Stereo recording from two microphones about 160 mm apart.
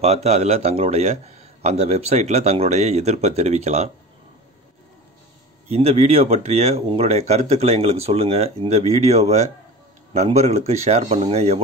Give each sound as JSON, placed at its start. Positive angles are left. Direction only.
{"t": 0.0, "sound": "a man's voice", "side_deg": -40}
{"t": 5.7, "sound": "a man's voice", "side_deg": -40}